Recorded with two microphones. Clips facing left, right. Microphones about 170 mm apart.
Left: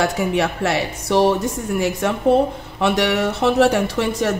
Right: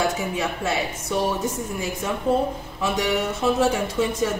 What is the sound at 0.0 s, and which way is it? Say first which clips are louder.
A man's voice: left 5 dB; 75° left (ahead or behind).